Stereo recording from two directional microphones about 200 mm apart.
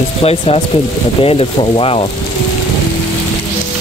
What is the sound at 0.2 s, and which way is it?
Speech, 30° left (ahead or behind).